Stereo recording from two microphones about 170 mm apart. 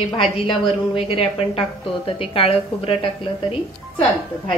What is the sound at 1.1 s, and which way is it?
A woman's voice, 35° left (ahead or behind).